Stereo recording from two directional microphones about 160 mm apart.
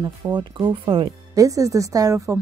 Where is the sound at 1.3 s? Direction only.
20° right (ahead or behind).